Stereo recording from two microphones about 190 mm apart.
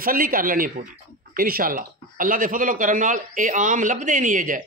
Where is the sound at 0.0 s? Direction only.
50° right (ahead or behind).